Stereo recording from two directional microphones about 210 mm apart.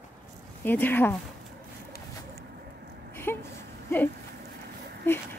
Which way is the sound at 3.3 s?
10° left (ahead or behind).